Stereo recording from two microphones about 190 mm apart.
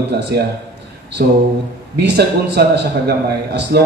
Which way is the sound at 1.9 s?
60° right (ahead or behind).